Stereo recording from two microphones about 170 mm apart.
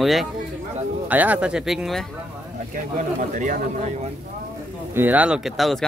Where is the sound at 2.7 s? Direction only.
50° right (ahead or behind).